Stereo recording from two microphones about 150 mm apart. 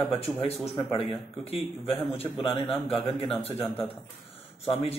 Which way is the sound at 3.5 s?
15° left (ahead or behind).